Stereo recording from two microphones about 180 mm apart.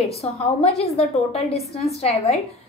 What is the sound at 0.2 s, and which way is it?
A woman's voice, 35° left (ahead or behind).